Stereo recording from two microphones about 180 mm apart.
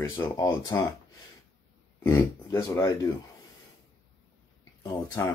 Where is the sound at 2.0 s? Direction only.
20° left (ahead or behind).